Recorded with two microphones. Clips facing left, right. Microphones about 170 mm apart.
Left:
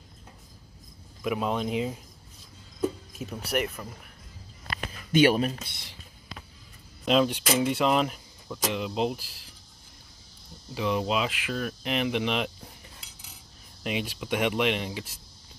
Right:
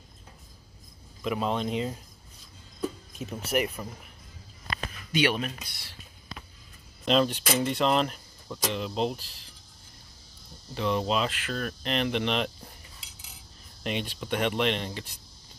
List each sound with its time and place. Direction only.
1.2 s speech: 5° left (ahead or behind)
3.2 s speech: centre (ahead or behind)
3.6 s speech: 15° right (ahead or behind)
5.1 s speech: 40° left (ahead or behind); by 5.9 s 20° left (ahead or behind)
7.1 s speech: 10° left (ahead or behind)
10.7 s speech: 5° left (ahead or behind)
13.8 s speech: 5° left (ahead or behind)